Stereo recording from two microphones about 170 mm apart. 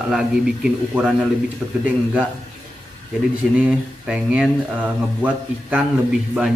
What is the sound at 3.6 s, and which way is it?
A man's voice, 5° right (ahead or behind).